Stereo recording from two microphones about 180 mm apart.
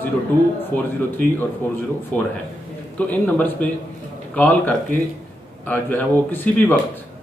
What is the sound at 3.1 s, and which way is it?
A man's voice, 10° left (ahead or behind).